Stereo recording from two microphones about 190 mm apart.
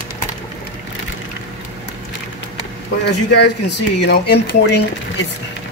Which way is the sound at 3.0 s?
65° left (ahead or behind).